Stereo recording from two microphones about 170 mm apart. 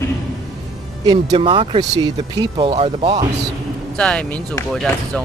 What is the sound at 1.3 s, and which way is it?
Speech, 30° right (ahead or behind).